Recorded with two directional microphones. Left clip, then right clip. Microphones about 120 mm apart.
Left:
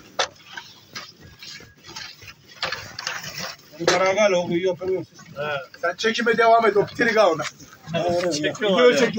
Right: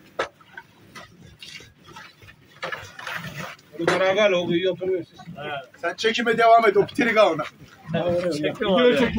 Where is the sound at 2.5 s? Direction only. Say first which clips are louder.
Left 3 dB; 30° left (ahead or behind).